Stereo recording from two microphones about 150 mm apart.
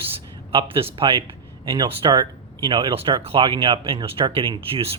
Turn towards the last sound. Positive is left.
turn(degrees=-40)  # may be behind; listen again after turning